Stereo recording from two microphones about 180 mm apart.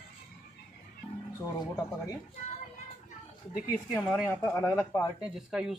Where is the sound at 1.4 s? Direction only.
15° left (ahead or behind).